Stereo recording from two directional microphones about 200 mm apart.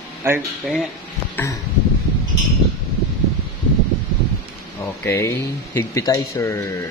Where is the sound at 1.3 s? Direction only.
15° left (ahead or behind).